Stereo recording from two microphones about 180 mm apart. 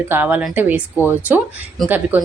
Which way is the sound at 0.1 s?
10° right (ahead or behind).